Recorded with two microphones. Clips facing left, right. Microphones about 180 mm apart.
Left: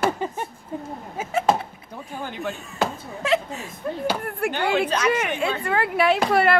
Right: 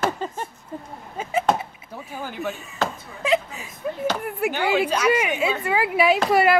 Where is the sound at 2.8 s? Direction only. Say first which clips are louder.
Left 1 dB; centre (ahead or behind).